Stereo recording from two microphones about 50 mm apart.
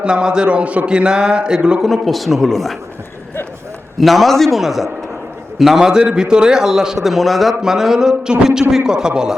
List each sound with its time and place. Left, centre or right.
0.0 s a man's voice: centre
1.8 s speech: centre
4.0 s a man's voice: centre